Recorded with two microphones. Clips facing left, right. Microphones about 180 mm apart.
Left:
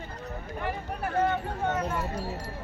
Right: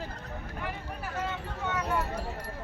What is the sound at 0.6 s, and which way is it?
Speech, 55° left (ahead or behind).